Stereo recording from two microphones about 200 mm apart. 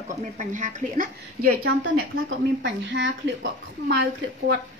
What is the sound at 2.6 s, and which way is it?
A woman's voice, 60° right (ahead or behind).